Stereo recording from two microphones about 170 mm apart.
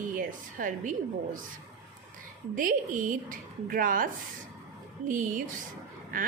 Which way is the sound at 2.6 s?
50° right (ahead or behind).